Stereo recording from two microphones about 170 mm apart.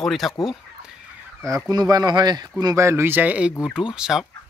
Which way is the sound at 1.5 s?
20° right (ahead or behind).